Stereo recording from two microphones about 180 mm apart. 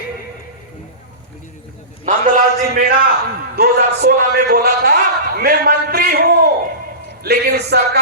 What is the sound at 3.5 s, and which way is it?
A man's voice, 60° right (ahead or behind).